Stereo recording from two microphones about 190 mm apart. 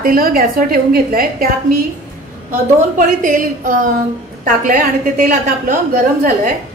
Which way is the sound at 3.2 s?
45° right (ahead or behind).